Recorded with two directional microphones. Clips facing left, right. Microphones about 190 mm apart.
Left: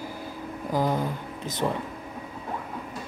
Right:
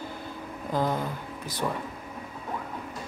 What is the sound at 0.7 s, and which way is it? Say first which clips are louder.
Speech: left 2 dB; 15° left (ahead or behind).